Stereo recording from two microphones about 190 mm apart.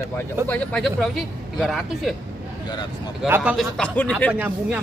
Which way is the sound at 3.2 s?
10° right (ahead or behind).